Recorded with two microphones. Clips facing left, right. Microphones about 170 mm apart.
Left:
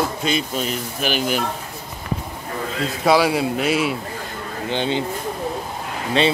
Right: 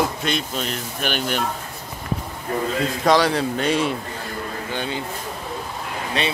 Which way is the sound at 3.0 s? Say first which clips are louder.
Left 2 dB; 10° left (ahead or behind).